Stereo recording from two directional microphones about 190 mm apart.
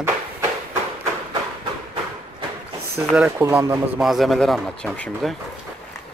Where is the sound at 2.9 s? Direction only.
5° right (ahead or behind).